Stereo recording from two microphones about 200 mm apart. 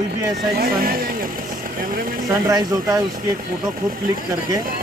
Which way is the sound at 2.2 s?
20° right (ahead or behind).